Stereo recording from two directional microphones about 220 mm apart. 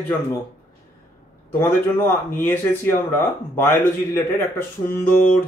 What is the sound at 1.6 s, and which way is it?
Speech, 10° left (ahead or behind).